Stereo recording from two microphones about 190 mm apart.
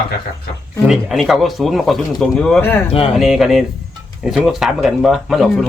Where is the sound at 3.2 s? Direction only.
Centre (ahead or behind).